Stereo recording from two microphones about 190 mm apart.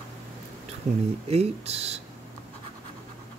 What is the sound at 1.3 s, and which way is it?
Speech, 35° right (ahead or behind).